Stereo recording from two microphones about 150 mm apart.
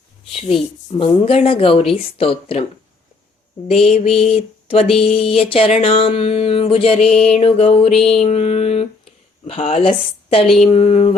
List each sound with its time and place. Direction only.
0.3 s speech: 40° left (ahead or behind)
3.8 s speech: 40° left (ahead or behind)
10.6 s a sound: 40° left (ahead or behind)